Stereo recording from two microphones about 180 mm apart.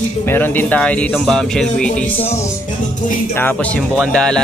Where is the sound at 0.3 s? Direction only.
10° left (ahead or behind).